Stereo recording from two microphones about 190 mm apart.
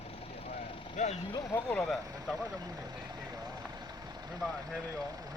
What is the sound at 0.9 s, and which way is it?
Speech, 35° left (ahead or behind).